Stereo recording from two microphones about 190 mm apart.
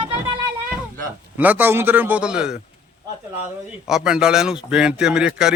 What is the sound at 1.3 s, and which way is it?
A man's voice, 10° right (ahead or behind).